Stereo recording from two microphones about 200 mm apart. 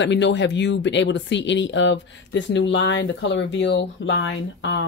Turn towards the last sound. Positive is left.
turn(degrees=70)  # may be behind; listen again after turning